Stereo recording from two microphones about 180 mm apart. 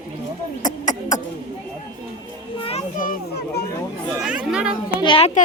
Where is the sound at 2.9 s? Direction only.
45° left (ahead or behind).